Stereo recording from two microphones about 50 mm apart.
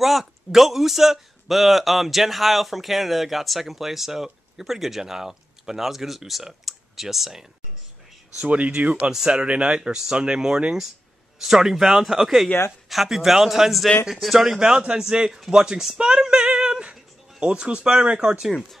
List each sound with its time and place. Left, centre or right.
0.0 s a man's voice: centre
8.5 s a man's voice: right
16.0 s female singing: centre
17.4 s speech: centre